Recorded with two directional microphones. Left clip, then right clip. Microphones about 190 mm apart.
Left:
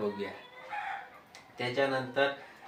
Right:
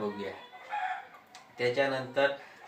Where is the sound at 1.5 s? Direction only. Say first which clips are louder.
Right 2 dB; 15° left (ahead or behind).